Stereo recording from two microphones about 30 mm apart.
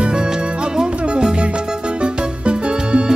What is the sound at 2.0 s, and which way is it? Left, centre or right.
Music, right.